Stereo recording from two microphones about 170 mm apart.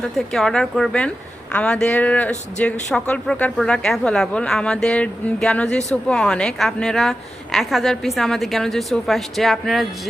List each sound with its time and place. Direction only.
0.3 s speech: 5° left (ahead or behind)